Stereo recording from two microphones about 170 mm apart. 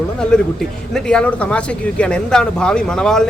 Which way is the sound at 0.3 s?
5° left (ahead or behind).